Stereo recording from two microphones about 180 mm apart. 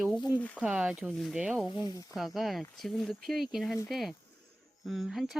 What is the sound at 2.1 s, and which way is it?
Speech, centre (ahead or behind).